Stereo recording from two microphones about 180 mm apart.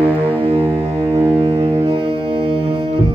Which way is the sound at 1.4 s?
30° right (ahead or behind).